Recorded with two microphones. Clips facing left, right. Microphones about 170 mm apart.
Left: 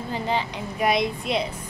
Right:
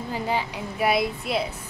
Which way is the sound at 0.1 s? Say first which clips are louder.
Left 1 dB; 10° right (ahead or behind).